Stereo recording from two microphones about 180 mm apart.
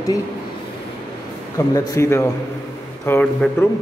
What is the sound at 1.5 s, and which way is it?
A man's voice, 20° left (ahead or behind).